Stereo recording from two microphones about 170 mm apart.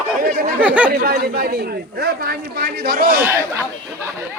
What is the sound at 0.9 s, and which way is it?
A man's voice, 65° right (ahead or behind).